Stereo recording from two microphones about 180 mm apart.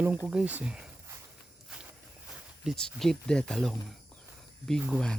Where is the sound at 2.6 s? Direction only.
5° left (ahead or behind).